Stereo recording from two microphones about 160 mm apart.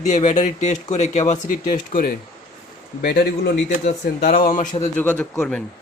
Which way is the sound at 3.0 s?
80° left.